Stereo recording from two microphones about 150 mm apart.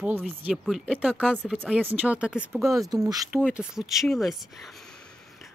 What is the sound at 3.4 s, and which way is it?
Speech, 5° right (ahead or behind).